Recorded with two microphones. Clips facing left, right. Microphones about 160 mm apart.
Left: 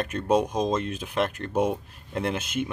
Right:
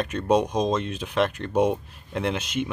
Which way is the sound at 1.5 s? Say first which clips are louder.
Right 3 dB; 20° right (ahead or behind).